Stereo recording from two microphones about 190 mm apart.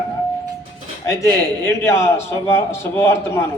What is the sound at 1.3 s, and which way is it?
A man's voice, 15° left (ahead or behind).